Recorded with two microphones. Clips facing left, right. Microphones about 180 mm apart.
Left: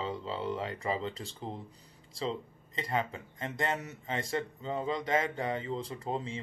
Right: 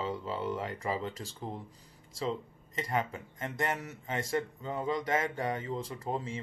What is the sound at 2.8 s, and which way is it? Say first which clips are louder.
Speech: even; 25° left (ahead or behind).